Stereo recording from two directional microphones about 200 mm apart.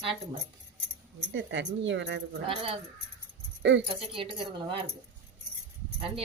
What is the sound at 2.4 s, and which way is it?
Speech, 30° right (ahead or behind).